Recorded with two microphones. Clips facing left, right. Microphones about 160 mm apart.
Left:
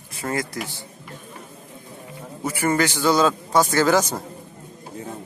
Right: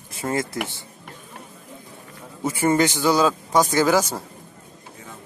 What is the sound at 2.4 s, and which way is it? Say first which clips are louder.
Speech: right 2 dB; 20° right (ahead or behind).